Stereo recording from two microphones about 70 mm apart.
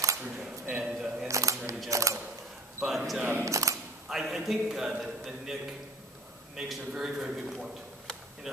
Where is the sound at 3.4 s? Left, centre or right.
Right.